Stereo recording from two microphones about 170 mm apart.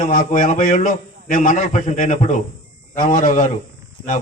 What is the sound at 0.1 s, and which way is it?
A man's voice, 45° left (ahead or behind).